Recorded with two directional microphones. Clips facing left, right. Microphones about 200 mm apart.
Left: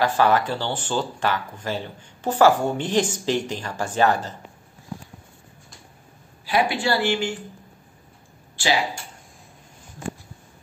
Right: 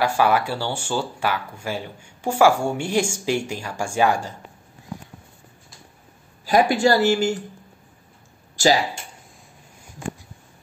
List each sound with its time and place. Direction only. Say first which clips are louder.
0.0 s speech: even; 10° right (ahead or behind)
6.4 s speech: right 5 dB; 45° right (ahead or behind)
8.6 s speech: right 6 dB; 40° right (ahead or behind)